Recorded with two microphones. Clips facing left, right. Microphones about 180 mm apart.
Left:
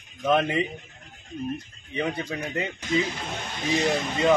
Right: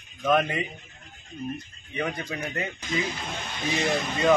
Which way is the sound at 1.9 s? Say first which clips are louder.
Left 2 dB; 25° left (ahead or behind).